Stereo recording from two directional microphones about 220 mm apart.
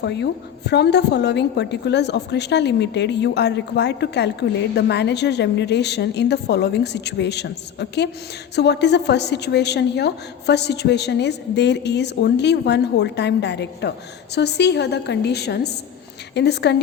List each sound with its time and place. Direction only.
0.0 s a woman's voice: 50° left (ahead or behind)